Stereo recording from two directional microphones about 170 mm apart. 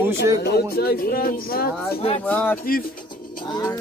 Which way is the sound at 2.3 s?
10° left (ahead or behind).